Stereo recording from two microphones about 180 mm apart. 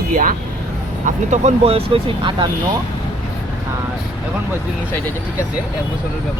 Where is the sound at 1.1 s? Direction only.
40° right (ahead or behind).